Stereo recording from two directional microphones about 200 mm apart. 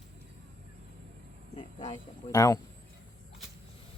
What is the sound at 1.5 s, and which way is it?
Speech, 35° left (ahead or behind).